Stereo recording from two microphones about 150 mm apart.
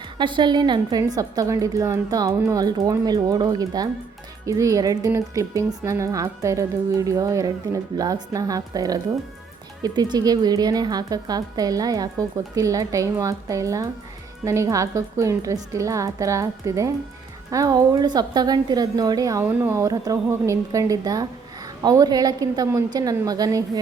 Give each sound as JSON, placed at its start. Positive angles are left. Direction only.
{"t": 0.2, "sound": "a woman's voice", "side_deg": -30}